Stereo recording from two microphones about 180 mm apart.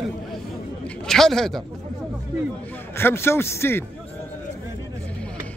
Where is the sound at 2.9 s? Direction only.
15° left (ahead or behind).